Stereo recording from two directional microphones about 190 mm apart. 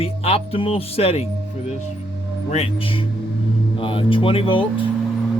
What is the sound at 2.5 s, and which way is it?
Speech, 30° left (ahead or behind).